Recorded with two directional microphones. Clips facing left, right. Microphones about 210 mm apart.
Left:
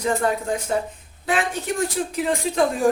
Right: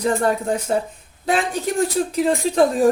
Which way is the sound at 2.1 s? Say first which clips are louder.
Right 5 dB; 35° right (ahead or behind).